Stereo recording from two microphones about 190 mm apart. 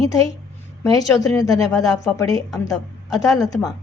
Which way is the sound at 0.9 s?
20° left (ahead or behind).